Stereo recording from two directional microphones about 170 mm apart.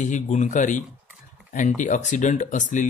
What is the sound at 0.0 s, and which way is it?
Speech, 45° left (ahead or behind).